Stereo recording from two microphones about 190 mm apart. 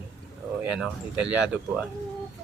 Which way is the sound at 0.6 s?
5° right (ahead or behind).